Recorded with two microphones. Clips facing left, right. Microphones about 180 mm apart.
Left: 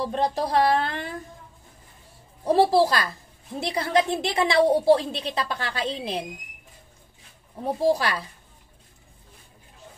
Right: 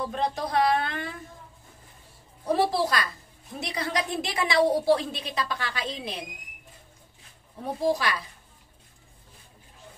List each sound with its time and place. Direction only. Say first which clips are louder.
0.0 s speech: left 4 dB; 35° left (ahead or behind)
2.4 s a woman's voice: left 6 dB; 30° left (ahead or behind)
7.6 s speech: left 3 dB; 30° left (ahead or behind)